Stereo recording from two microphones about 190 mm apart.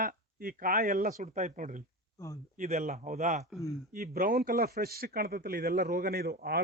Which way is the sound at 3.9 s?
50° right (ahead or behind).